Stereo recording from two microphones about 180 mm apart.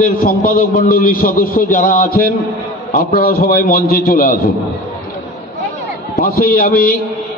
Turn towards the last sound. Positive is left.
turn(degrees=55)  # may be behind; listen again after turning